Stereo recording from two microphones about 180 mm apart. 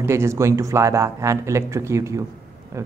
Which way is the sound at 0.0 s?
15° right (ahead or behind).